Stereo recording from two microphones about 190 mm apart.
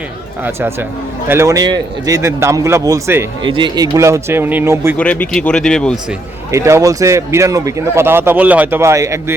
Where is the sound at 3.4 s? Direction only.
25° right (ahead or behind).